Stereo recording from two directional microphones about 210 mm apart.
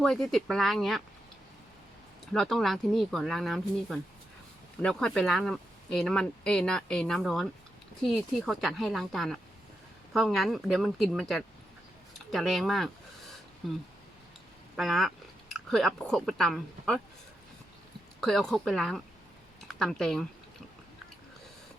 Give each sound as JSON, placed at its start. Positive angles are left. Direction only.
{"t": 0.0, "sound": "speech", "side_deg": 0}
{"t": 2.2, "sound": "speech", "side_deg": 0}
{"t": 14.8, "sound": "speech", "side_deg": 0}
{"t": 18.2, "sound": "speech", "side_deg": 0}